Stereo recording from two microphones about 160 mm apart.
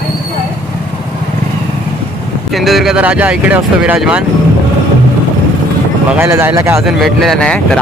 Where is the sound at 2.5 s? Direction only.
Centre (ahead or behind).